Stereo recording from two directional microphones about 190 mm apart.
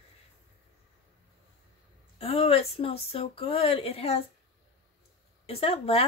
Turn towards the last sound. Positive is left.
turn(degrees=30)  # may be behind; listen again after turning